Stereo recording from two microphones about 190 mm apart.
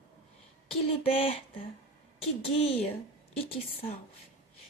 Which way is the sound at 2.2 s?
30° left (ahead or behind).